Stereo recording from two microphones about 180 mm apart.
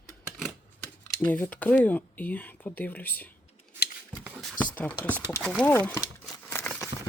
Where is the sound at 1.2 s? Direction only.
10° left (ahead or behind).